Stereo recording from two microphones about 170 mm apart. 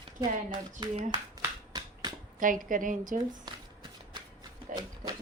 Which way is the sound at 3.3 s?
25° right (ahead or behind).